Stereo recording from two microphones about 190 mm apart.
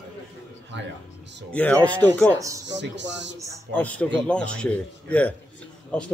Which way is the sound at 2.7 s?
70° right (ahead or behind).